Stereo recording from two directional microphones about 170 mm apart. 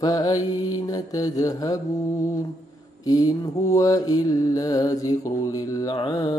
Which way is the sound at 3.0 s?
20° left (ahead or behind).